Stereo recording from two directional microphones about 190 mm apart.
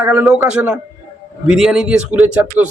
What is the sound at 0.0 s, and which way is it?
A man's voice, 10° right (ahead or behind).